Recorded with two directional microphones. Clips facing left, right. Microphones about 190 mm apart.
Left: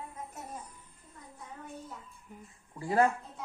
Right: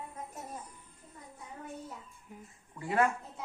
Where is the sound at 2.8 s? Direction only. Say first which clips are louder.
Left 2 dB; 35° left (ahead or behind).